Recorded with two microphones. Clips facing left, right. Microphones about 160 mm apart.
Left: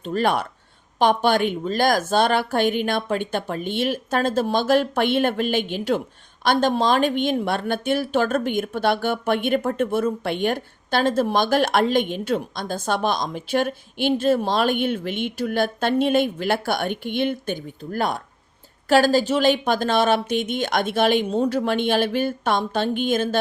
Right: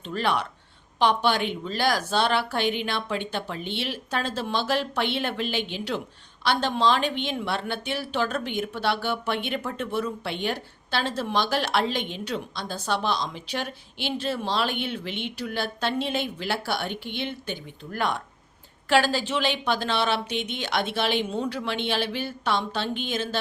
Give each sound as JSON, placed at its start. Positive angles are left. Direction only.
{"t": 0.0, "sound": "speech", "side_deg": 45}